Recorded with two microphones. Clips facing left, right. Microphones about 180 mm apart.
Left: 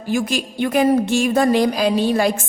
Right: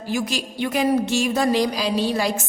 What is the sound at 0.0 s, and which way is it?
A woman's voice, 50° left (ahead or behind).